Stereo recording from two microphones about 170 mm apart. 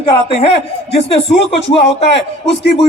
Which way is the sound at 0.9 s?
35° left (ahead or behind).